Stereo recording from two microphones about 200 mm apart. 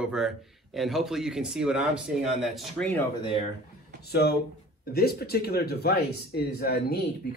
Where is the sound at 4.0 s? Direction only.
55° left (ahead or behind).